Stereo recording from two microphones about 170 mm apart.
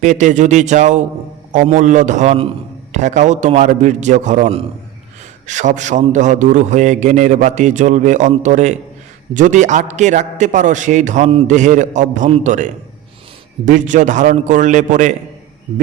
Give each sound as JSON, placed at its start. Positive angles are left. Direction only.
{"t": 0.0, "sound": "a man's voice", "side_deg": -45}